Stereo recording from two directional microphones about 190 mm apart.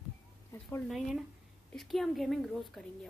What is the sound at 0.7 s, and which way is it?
A woman's voice, centre (ahead or behind).